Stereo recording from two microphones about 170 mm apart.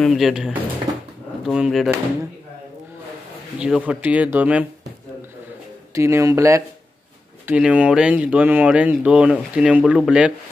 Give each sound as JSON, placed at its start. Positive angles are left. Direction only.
{"t": 0.0, "sound": "speech", "side_deg": 0}
{"t": 3.5, "sound": "speech", "side_deg": -5}
{"t": 5.9, "sound": "speech", "side_deg": -15}